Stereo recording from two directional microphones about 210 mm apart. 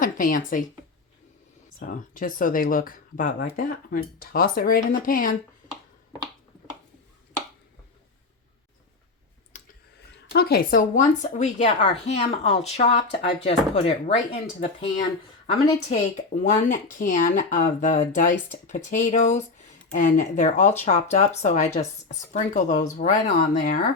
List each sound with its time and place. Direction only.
0.0 s speech: 40° left (ahead or behind)
1.8 s speech: 40° left (ahead or behind)
9.5 s clicking: 35° left (ahead or behind)
10.3 s speech: 45° left (ahead or behind)